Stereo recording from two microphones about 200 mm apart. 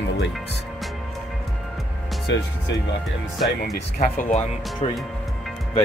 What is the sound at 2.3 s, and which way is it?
Speech, 65° left (ahead or behind).